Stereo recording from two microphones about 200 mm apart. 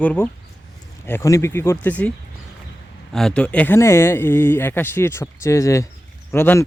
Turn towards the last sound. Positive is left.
turn(degrees=10)  # may be behind; listen again after turning